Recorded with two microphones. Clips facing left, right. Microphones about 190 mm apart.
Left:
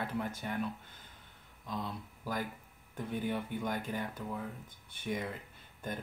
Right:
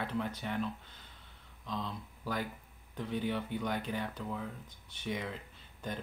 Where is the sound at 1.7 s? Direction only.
10° left (ahead or behind).